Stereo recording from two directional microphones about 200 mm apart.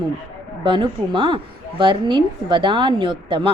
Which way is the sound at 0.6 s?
25° right (ahead or behind).